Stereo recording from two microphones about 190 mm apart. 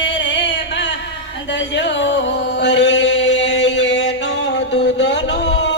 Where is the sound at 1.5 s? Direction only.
70° left (ahead or behind).